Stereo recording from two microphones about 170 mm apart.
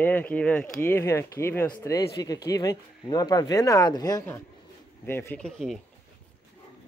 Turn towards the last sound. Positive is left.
turn(degrees=0)  # may be behind; listen again after turning